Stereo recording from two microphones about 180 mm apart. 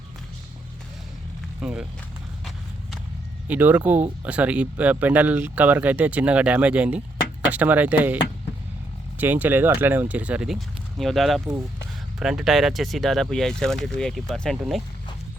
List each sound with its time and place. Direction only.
1.6 s speech: 5° right (ahead or behind)
3.4 s speech: 10° right (ahead or behind)